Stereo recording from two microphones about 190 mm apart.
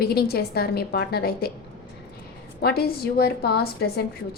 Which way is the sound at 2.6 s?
55° left (ahead or behind).